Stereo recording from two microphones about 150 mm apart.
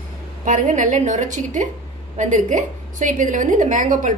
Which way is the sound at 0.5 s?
55° right (ahead or behind).